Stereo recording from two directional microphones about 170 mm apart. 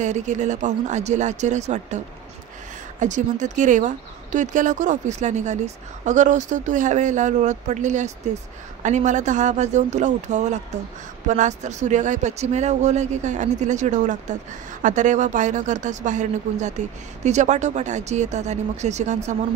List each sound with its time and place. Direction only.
0.0 s speech: 45° right (ahead or behind)
3.0 s speech: 45° right (ahead or behind)